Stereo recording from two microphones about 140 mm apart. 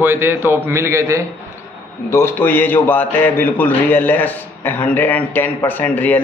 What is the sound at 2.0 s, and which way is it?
A man's voice, 20° left (ahead or behind).